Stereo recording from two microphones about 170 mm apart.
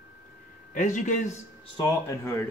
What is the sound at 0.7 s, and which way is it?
Speech, 50° left (ahead or behind).